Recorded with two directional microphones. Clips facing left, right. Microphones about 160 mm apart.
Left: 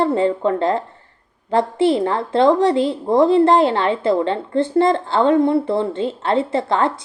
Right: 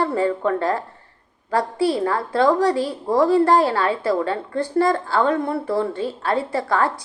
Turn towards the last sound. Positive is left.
turn(degrees=25)  # may be behind; listen again after turning